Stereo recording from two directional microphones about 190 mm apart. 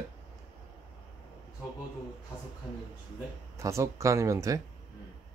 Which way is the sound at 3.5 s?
15° right (ahead or behind).